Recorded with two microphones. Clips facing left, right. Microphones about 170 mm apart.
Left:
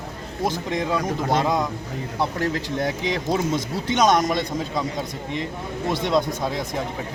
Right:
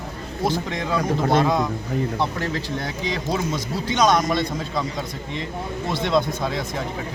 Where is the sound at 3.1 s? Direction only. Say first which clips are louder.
Even; 20° left (ahead or behind).